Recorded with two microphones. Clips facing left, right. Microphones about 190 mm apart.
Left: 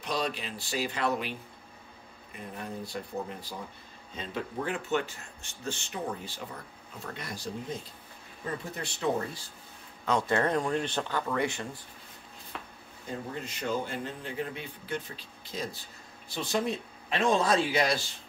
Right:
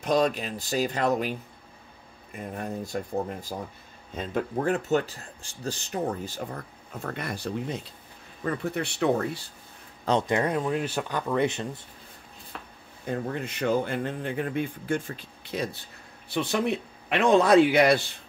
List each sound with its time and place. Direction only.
0.0 s speech: 45° right (ahead or behind)
2.3 s speech: 45° right (ahead or behind); by 9.4 s 65° right (ahead or behind)
10.2 s speech: 15° right (ahead or behind)
12.5 s a sound: centre (ahead or behind)
13.0 s speech: 65° right (ahead or behind)